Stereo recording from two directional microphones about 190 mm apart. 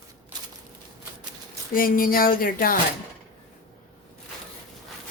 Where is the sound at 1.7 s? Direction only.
50° left (ahead or behind).